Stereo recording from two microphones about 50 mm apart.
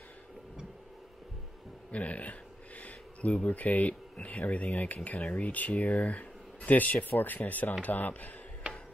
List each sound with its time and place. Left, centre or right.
1.9 s speech: left